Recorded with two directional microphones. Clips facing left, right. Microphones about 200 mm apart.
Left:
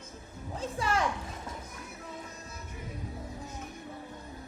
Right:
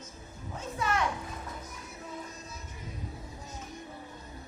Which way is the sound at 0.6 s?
30° left (ahead or behind).